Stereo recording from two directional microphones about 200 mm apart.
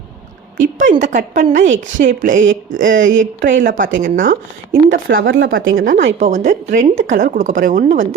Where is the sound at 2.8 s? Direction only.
70° right (ahead or behind).